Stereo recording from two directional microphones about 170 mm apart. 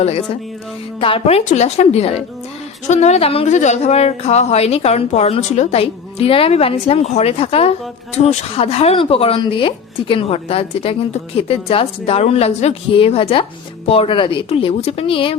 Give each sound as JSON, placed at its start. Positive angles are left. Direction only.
{"t": 0.9, "sound": "speech", "side_deg": 35}